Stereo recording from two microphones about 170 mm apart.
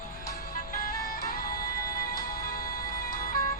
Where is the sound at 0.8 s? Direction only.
60° left (ahead or behind).